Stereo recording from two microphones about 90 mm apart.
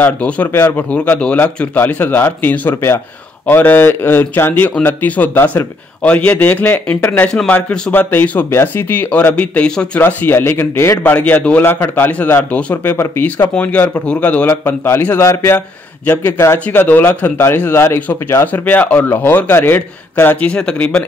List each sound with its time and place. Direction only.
0.0 s a man's voice: 20° left (ahead or behind)
7.2 s a man's voice: 10° left (ahead or behind)
7.9 s a man's voice: 20° left (ahead or behind)
12.9 s speech: 30° left (ahead or behind)
16.5 s a man's voice: 15° left (ahead or behind)